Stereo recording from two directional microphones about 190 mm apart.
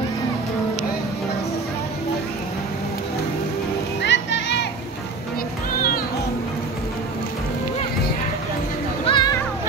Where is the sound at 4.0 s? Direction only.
65° left (ahead or behind).